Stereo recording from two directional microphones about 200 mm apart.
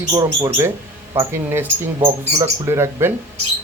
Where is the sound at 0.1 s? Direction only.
20° right (ahead or behind).